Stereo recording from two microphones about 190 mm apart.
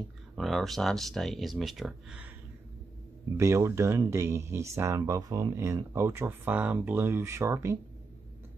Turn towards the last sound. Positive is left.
turn(degrees=-15)  # may be behind; listen again after turning